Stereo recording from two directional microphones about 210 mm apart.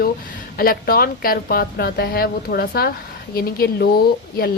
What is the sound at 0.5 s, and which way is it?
Speech, 45° left (ahead or behind).